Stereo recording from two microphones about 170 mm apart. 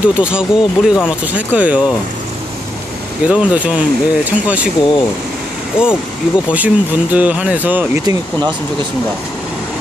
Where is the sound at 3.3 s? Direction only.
5° right (ahead or behind).